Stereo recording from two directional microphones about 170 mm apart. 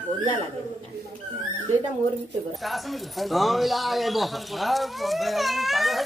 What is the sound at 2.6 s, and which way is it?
Speech, centre (ahead or behind).